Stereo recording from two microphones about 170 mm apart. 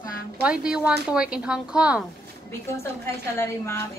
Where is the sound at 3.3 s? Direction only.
15° left (ahead or behind).